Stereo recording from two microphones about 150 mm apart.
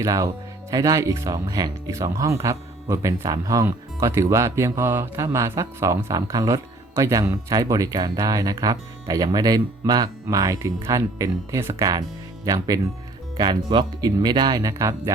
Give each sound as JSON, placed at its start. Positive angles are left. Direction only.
{"t": 0.0, "sound": "speech", "side_deg": -20}